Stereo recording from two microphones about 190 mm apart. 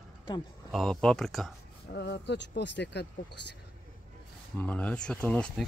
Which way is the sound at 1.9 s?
65° left (ahead or behind).